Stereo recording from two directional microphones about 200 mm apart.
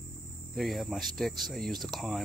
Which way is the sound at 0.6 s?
Centre (ahead or behind).